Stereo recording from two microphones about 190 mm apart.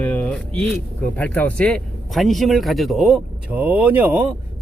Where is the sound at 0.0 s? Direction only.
10° left (ahead or behind).